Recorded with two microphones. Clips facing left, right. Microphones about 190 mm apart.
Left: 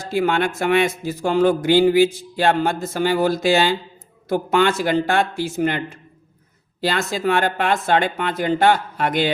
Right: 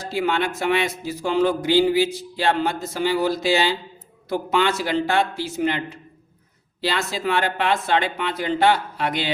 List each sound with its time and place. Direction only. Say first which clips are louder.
0.0 s a man's voice: left 3 dB; 50° left (ahead or behind)